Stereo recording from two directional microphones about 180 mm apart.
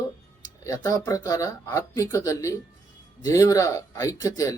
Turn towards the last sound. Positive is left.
turn(degrees=20)  # may be behind; listen again after turning